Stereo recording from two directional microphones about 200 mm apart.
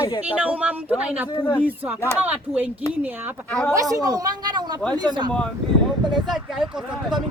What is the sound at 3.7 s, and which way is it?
Speech, 15° right (ahead or behind).